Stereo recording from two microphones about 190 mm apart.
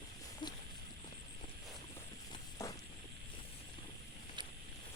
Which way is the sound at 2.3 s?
20° left (ahead or behind).